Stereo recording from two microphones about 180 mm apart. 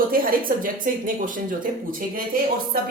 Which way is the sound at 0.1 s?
50° right (ahead or behind).